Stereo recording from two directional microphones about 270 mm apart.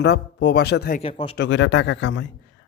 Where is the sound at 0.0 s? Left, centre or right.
Left.